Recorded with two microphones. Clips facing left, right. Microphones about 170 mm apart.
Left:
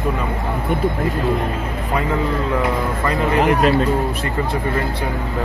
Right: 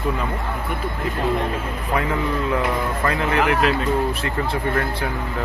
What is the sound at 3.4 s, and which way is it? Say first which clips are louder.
Speech: left 5 dB; 40° left (ahead or behind).